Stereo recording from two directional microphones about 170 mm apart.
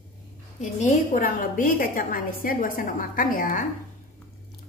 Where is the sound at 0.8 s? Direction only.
50° left (ahead or behind).